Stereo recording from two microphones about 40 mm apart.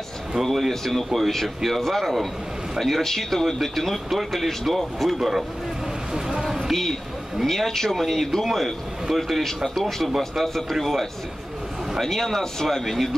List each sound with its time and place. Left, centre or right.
0.4 s speech: centre
6.4 s a sound: centre
6.7 s speech: centre